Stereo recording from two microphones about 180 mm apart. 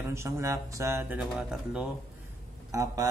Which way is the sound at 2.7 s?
20° right (ahead or behind).